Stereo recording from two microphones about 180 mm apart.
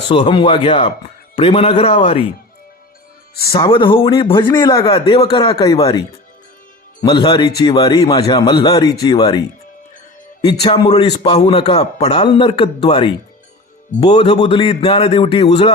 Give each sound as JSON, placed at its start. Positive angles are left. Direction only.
{"t": 0.1, "sound": "a man's voice", "side_deg": 25}
{"t": 3.6, "sound": "speech", "side_deg": 30}
{"t": 10.4, "sound": "a man's voice", "side_deg": 35}